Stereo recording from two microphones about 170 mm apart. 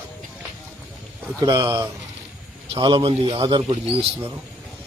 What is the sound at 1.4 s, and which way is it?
A man's voice, 25° right (ahead or behind).